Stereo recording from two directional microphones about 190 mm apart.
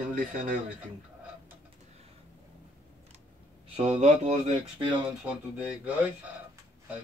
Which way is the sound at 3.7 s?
30° right (ahead or behind).